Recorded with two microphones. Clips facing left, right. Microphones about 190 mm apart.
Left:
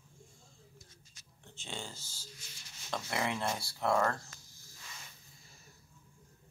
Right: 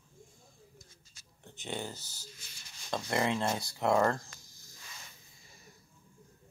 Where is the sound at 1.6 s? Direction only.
15° right (ahead or behind).